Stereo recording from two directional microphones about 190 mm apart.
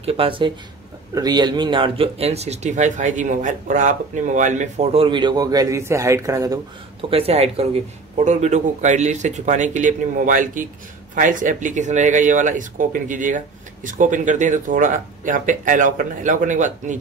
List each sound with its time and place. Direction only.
0.0 s speech: 30° right (ahead or behind)
7.1 s speech: 30° right (ahead or behind)